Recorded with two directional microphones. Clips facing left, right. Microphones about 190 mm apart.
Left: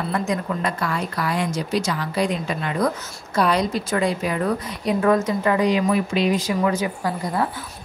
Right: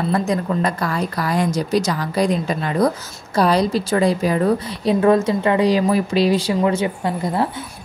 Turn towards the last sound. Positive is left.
turn(degrees=-25)  # may be behind; listen again after turning